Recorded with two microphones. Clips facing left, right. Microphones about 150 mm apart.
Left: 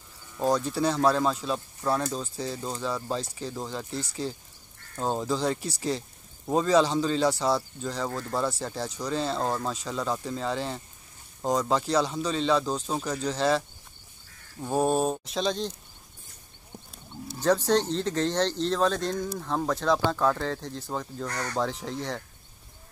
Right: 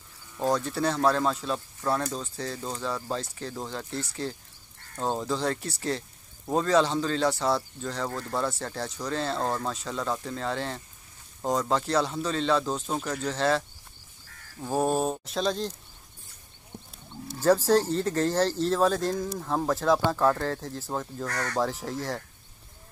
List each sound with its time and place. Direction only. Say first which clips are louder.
0.4 s speech: left 1 dB; centre (ahead or behind)
17.3 s speech: right 2 dB; 5° right (ahead or behind)
21.3 s speech: right 2 dB; 15° left (ahead or behind)
21.5 s speech: right 1 dB; 5° right (ahead or behind)